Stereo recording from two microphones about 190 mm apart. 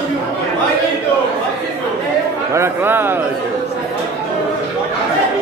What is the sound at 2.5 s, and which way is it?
Speech, 10° right (ahead or behind).